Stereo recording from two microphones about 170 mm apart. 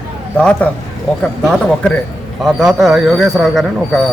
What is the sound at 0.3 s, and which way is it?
Speech, 5° left (ahead or behind).